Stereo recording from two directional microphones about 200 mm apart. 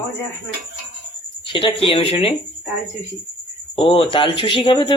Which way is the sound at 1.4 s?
25° left (ahead or behind).